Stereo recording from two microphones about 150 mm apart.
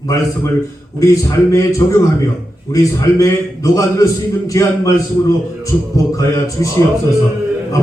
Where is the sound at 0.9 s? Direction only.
20° left (ahead or behind).